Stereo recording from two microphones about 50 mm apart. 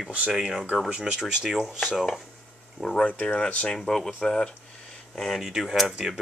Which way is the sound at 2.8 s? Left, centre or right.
Centre.